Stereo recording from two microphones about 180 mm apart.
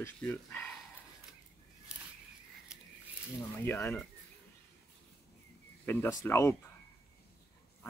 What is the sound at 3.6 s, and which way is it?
Speech, 10° left (ahead or behind).